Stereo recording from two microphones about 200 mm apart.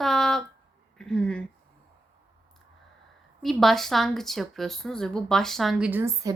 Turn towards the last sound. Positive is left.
turn(degrees=-15)  # may be behind; listen again after turning